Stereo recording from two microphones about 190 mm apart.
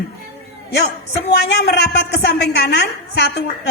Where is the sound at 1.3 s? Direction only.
60° left (ahead or behind).